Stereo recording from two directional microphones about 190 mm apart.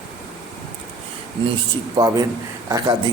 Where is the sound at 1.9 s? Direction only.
20° right (ahead or behind).